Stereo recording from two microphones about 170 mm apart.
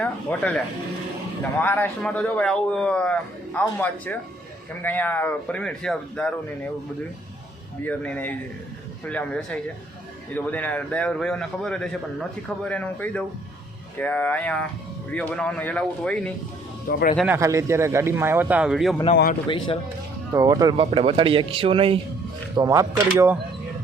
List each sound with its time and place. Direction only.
0.0 s a man's voice: 10° left (ahead or behind)
1.6 s a man's voice: 10° left (ahead or behind)
7.9 s a man's voice: 10° left (ahead or behind)
16.9 s speech: 60° left (ahead or behind)
17.2 s a man's voice: 15° right (ahead or behind)
19.1 s speech: 60° left (ahead or behind)
19.5 s speech: 30° left (ahead or behind)
20.3 s speech: 20° right (ahead or behind)
20.7 s a man's voice: 35° right (ahead or behind)
22.5 s a man's voice: 20° right (ahead or behind)